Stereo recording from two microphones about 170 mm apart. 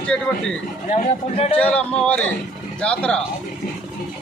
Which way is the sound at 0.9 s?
40° left (ahead or behind).